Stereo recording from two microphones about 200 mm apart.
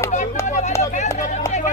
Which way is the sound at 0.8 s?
35° left (ahead or behind).